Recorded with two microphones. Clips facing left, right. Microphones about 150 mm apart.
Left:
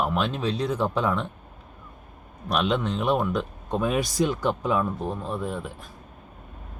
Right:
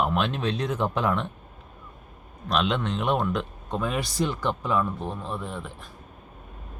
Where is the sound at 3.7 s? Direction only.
15° left (ahead or behind).